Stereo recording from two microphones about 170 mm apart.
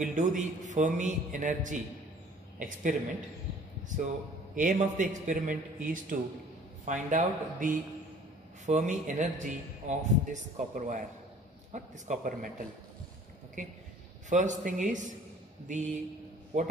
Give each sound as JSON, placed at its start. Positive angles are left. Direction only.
{"t": 0.0, "sound": "a man's voice", "side_deg": -50}
{"t": 4.6, "sound": "a man's voice", "side_deg": -50}
{"t": 14.3, "sound": "a man's voice", "side_deg": -45}